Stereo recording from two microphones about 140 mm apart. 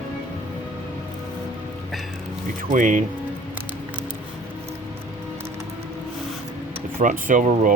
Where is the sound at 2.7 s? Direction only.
70° right (ahead or behind).